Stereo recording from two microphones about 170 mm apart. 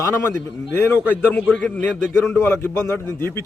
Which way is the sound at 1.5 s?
10° left (ahead or behind).